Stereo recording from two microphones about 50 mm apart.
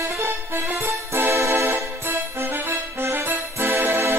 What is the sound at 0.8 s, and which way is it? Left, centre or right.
Music, right.